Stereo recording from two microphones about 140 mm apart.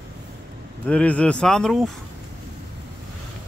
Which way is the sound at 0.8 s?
10° left (ahead or behind).